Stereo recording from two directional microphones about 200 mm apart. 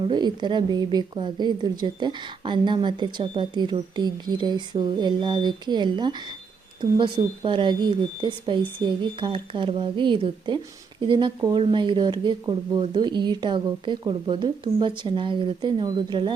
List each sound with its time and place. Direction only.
0.0 s speech: 20° right (ahead or behind)